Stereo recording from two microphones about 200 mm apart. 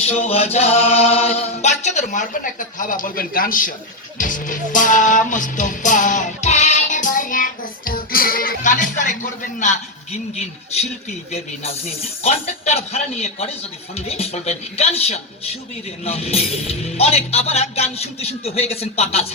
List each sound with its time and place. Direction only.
0.0 s speech: 30° left (ahead or behind)
4.2 s music: 40° left (ahead or behind)
9.6 s speech: 35° left (ahead or behind)